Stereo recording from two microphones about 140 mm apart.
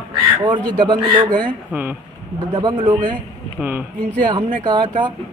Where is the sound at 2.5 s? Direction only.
35° right (ahead or behind).